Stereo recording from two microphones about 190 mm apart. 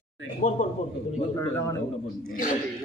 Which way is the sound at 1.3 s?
15° left (ahead or behind).